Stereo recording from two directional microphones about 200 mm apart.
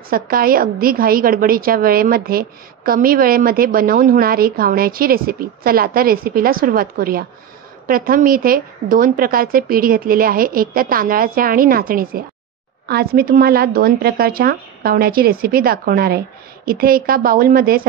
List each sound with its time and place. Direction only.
0.1 s a woman's voice: 45° right (ahead or behind)